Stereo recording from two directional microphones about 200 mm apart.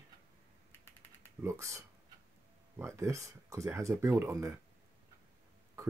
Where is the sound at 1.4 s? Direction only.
15° right (ahead or behind).